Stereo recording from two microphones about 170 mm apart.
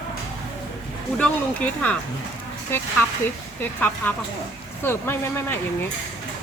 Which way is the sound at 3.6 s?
10° left (ahead or behind).